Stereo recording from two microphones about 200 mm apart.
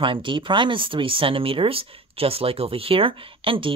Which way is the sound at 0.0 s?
25° right (ahead or behind).